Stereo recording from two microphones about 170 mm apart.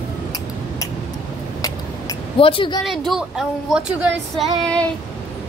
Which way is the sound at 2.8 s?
Centre (ahead or behind).